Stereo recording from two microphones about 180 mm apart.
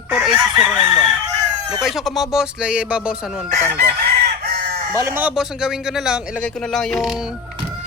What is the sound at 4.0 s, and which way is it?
Chicken, 55° right (ahead or behind).